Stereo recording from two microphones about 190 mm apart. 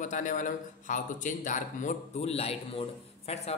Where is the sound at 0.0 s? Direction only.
40° left (ahead or behind).